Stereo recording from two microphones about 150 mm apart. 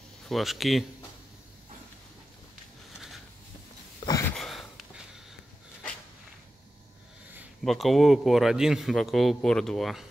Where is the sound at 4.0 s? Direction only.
20° left (ahead or behind).